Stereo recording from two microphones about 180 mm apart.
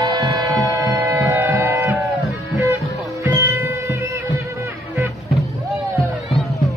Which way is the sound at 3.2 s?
15° right (ahead or behind).